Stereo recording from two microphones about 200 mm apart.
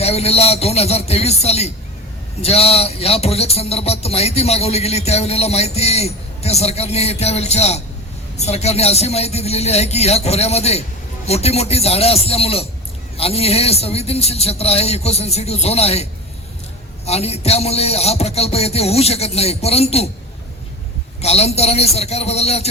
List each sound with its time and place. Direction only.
0.0 s speech: 30° left (ahead or behind)
17.1 s speech: 30° left (ahead or behind)
21.2 s speech: 30° left (ahead or behind)